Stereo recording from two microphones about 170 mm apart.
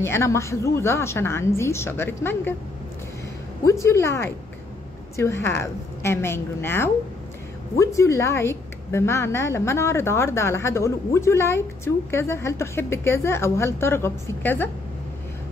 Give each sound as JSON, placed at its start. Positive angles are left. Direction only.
{"t": 0.0, "sound": "a woman's voice", "side_deg": 15}
{"t": 3.6, "sound": "a woman's voice", "side_deg": 15}